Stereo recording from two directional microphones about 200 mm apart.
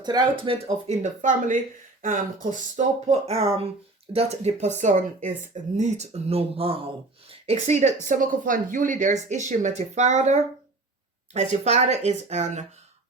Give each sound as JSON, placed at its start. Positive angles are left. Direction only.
{"t": 0.0, "sound": "speech", "side_deg": -20}
{"t": 0.9, "sound": "speech", "side_deg": -40}